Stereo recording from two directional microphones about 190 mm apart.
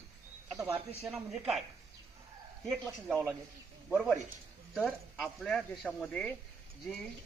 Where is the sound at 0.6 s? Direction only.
15° right (ahead or behind).